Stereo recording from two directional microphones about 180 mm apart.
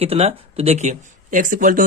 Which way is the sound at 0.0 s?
35° right (ahead or behind).